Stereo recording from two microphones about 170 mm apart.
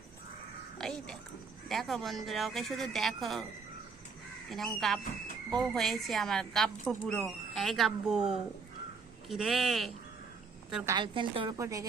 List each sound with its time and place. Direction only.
0.8 s speech: 5° left (ahead or behind)
4.4 s speech: centre (ahead or behind)
10.9 s a woman's voice: 30° right (ahead or behind)